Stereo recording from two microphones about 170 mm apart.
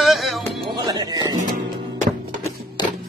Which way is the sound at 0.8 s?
25° right (ahead or behind).